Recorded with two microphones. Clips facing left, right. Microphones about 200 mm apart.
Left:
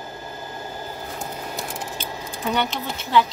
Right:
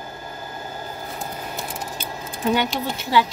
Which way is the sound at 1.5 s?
5° right (ahead or behind).